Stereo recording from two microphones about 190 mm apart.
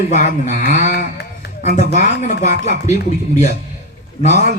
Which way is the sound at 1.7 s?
40° left (ahead or behind).